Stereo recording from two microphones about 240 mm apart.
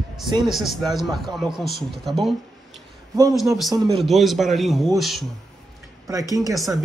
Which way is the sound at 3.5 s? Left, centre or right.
Centre.